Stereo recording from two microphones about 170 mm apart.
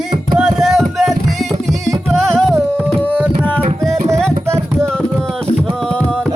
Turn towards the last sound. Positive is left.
turn(degrees=-15)  # may be behind; listen again after turning